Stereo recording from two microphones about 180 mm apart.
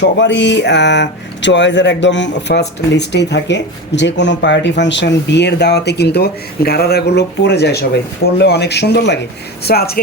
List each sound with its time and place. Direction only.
0.0 s speech: 85° left; by 10.0 s 60° left (ahead or behind)